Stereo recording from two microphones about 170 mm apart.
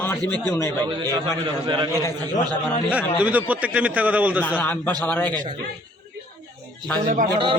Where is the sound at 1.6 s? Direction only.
25° right (ahead or behind).